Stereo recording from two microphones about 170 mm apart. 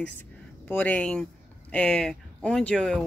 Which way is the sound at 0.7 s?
10° left (ahead or behind).